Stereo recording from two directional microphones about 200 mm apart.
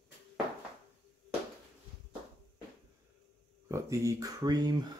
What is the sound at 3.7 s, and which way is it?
Speech, 15° right (ahead or behind).